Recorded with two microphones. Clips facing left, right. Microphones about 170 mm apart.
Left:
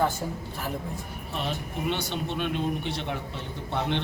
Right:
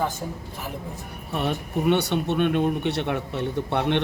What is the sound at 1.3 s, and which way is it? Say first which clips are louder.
Speech: right 6 dB; 60° right (ahead or behind).